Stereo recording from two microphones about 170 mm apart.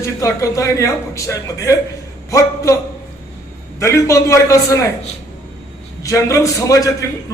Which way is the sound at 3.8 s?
15° left (ahead or behind).